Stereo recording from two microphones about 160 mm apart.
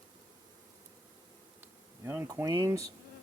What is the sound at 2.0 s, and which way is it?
Speech, 15° right (ahead or behind).